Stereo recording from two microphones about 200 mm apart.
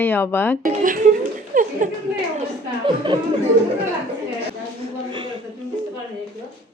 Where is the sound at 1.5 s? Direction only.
40° right (ahead or behind).